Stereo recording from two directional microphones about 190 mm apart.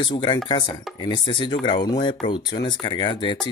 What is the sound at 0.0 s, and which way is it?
Speech, 25° left (ahead or behind).